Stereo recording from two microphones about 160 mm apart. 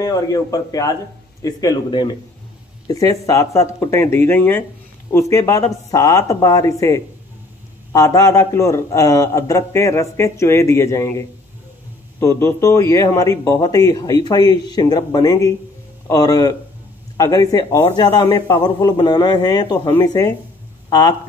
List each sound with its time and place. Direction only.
0.0 s a man's voice: 20° left (ahead or behind)